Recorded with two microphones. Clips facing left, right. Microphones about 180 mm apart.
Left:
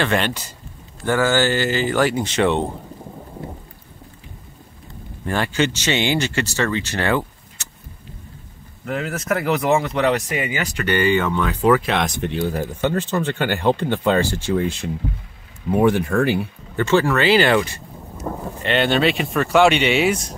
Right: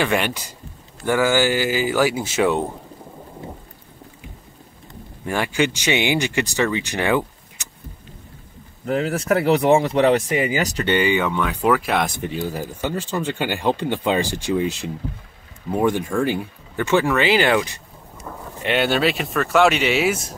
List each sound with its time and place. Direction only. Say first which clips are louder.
0.0 s speech: even; 10° right (ahead or behind)
5.2 s speech: even; 10° right (ahead or behind)
8.8 s speech: right 3 dB; 30° right (ahead or behind)
10.8 s speech: left 2 dB; 15° right (ahead or behind)
15.7 s speech: left 3 dB; 5° left (ahead or behind)
16.7 s speech: left 1 dB; 15° right (ahead or behind)
18.3 s a sound: left 8 dB; 50° left (ahead or behind)
18.6 s speech: left 1 dB; 10° right (ahead or behind)